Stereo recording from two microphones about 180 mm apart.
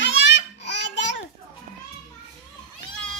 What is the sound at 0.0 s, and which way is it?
Babbling, 85° left.